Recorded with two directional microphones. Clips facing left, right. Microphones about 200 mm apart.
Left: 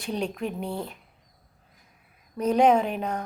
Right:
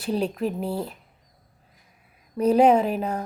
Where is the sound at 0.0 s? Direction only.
5° right (ahead or behind).